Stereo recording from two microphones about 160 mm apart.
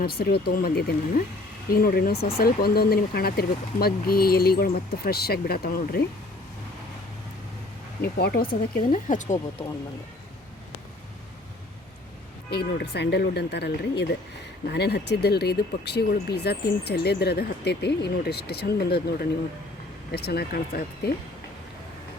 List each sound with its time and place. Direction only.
0.0 s speech: 80° left
8.0 s speech: 75° left (ahead or behind); by 9.6 s 50° left (ahead or behind)
12.5 s speech: 90° left